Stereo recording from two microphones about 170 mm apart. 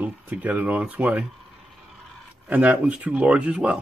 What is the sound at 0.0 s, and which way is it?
Speech, 10° right (ahead or behind).